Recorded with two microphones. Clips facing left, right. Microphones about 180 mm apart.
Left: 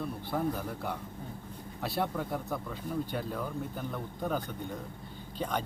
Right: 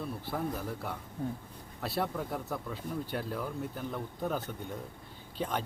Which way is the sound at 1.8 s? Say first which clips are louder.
Left 1 dB; centre (ahead or behind).